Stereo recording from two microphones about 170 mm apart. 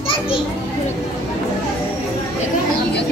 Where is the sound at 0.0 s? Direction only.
30° left (ahead or behind).